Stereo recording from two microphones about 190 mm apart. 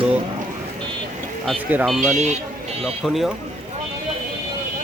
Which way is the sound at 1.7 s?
10° right (ahead or behind).